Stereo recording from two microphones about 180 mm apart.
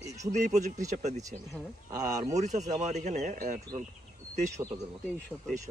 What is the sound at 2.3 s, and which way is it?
Speech, 40° right (ahead or behind).